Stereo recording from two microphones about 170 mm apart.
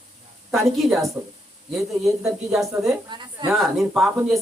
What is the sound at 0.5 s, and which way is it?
Speech, centre (ahead or behind).